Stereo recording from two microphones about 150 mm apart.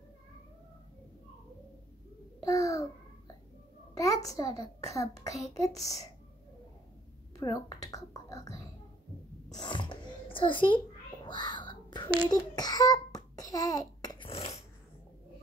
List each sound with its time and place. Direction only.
2.4 s babbling: 20° left (ahead or behind)
3.9 s a child's voice: 20° left (ahead or behind)
7.3 s a child's voice: 25° left (ahead or behind)
9.5 s a sound: 30° left (ahead or behind)
11.2 s whispering: 30° left (ahead or behind)
12.3 s babbling: 25° left (ahead or behind); by 14.6 s 40° left (ahead or behind)